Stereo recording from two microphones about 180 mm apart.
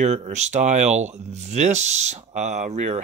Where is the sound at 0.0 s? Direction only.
40° right (ahead or behind).